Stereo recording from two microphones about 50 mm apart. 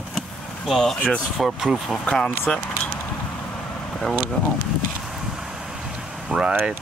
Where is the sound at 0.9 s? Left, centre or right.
Centre.